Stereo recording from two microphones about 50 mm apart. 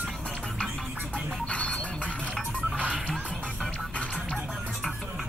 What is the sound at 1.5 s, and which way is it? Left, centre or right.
Music, left.